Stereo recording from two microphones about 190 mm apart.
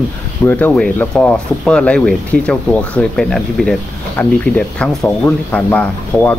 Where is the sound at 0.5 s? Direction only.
10° left (ahead or behind).